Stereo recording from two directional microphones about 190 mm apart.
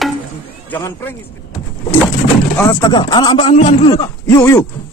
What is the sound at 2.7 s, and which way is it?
A man's voice, 20° left (ahead or behind).